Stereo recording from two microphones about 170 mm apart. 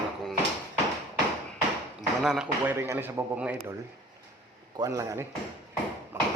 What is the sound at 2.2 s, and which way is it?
Speech, 5° right (ahead or behind).